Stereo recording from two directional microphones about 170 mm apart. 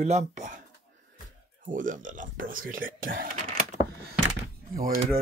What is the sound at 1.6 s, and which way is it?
Speech, 50° right (ahead or behind).